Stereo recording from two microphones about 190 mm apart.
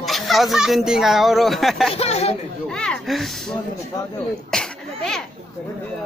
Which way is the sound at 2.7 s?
5° left (ahead or behind).